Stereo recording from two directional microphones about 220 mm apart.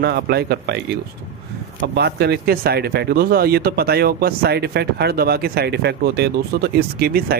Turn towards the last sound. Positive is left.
turn(degrees=-45)  # may be behind; listen again after turning